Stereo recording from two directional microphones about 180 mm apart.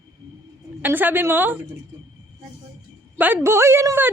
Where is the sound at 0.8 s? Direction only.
10° right (ahead or behind).